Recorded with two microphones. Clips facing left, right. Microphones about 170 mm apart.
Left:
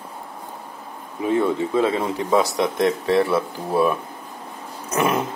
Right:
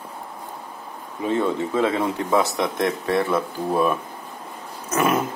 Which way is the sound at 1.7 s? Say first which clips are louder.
Left 1 dB; 25° left (ahead or behind).